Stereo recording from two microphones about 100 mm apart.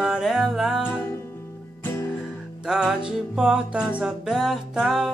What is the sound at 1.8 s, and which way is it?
Music, 25° left (ahead or behind).